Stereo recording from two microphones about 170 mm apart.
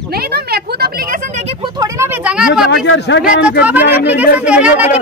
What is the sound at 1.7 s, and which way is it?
Speech, 20° right (ahead or behind).